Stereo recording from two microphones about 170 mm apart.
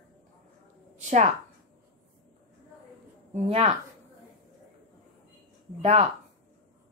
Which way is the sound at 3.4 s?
35° right (ahead or behind).